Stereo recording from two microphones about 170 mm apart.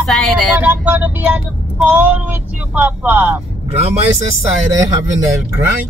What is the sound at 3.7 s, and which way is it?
Vehicle, 35° right (ahead or behind).